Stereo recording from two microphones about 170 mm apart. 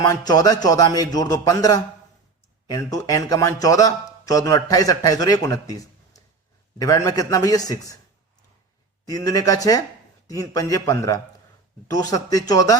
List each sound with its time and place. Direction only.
0.0 s a man's voice: 20° left (ahead or behind)
9.0 s a man's voice: 20° left (ahead or behind)